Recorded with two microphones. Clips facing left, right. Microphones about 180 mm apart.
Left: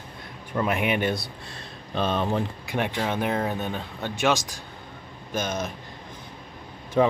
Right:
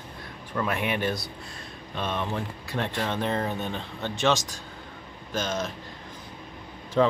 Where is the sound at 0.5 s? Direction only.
15° left (ahead or behind).